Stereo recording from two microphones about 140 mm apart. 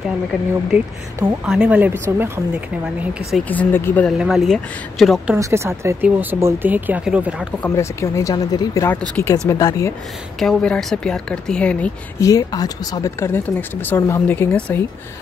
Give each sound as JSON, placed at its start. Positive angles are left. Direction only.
{"t": 0.3, "sound": "speech", "side_deg": -5}
{"t": 3.4, "sound": "speech", "side_deg": 15}
{"t": 4.2, "sound": "speech", "side_deg": 0}
{"t": 5.3, "sound": "speech", "side_deg": -20}
{"t": 7.7, "sound": "speech", "side_deg": 20}
{"t": 8.9, "sound": "speech", "side_deg": 10}
{"t": 9.5, "sound": "speech", "side_deg": 25}
{"t": 10.4, "sound": "speech", "side_deg": 5}
{"t": 12.2, "sound": "speech", "side_deg": 25}